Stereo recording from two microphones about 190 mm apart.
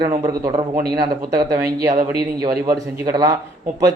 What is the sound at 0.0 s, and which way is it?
A man's voice, 20° right (ahead or behind).